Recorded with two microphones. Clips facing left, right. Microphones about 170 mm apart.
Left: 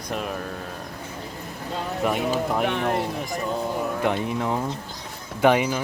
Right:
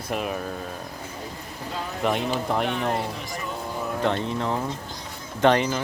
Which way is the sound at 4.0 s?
10° left (ahead or behind).